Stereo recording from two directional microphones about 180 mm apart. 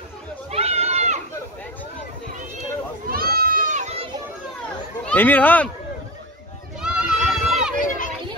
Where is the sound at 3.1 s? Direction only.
55° right (ahead or behind); by 4.1 s 40° right (ahead or behind).